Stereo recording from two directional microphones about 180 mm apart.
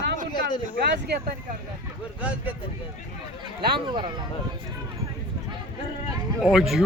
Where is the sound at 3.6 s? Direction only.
25° right (ahead or behind).